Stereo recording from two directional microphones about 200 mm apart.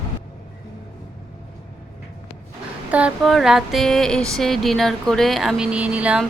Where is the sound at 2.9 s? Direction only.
5° right (ahead or behind).